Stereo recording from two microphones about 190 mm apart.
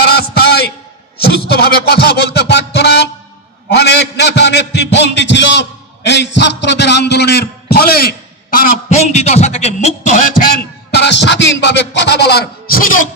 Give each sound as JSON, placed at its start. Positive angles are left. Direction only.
{"t": 0.0, "sound": "a sound", "side_deg": 55}
{"t": 1.5, "sound": "music", "side_deg": 55}
{"t": 3.6, "sound": "a man's voice", "side_deg": 60}
{"t": 10.9, "sound": "music", "side_deg": 65}